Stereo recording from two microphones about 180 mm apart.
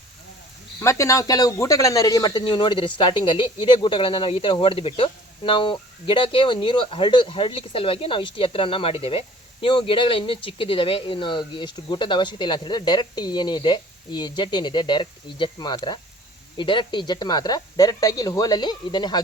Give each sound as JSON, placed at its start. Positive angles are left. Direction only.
{"t": 0.8, "sound": "a man's voice", "side_deg": 15}